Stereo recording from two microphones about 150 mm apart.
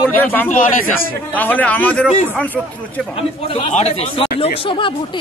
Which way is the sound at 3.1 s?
40° left (ahead or behind).